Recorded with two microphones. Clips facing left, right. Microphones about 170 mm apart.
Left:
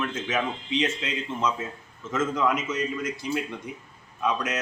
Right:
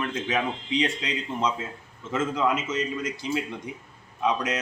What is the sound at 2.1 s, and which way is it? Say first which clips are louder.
Speech: even; 10° right (ahead or behind).